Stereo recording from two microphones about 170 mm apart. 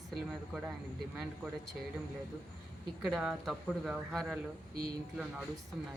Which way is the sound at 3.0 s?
5° right (ahead or behind).